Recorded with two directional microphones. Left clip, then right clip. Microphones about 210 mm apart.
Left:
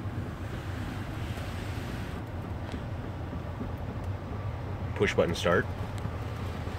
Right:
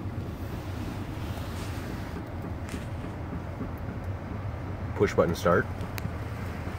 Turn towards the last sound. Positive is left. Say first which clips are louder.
# right 2 dB
turn(degrees=-20)  # may be behind; listen again after turning